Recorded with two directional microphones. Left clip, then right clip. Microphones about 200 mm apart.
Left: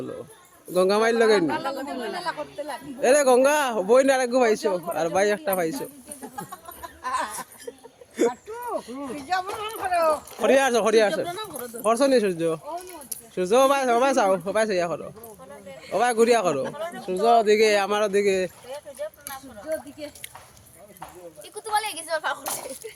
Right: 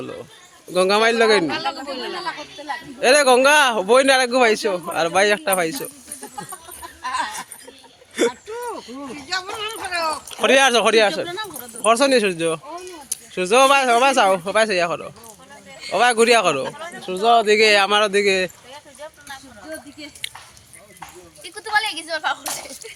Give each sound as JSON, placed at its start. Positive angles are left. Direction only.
{"t": 0.7, "sound": "a man's voice", "side_deg": 0}
{"t": 1.5, "sound": "a woman's voice", "side_deg": 40}
{"t": 3.0, "sound": "speech", "side_deg": -5}
{"t": 7.0, "sound": "a sound", "side_deg": 60}
{"t": 8.3, "sound": "a sound", "side_deg": 45}
{"t": 9.3, "sound": "speech", "side_deg": 40}
{"t": 10.4, "sound": "a man's voice", "side_deg": -5}
{"t": 16.7, "sound": "speech", "side_deg": 55}
{"t": 17.1, "sound": "speech", "side_deg": 0}
{"t": 21.4, "sound": "a sound", "side_deg": 60}